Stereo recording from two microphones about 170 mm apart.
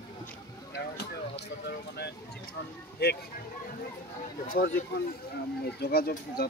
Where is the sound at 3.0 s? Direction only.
70° left (ahead or behind).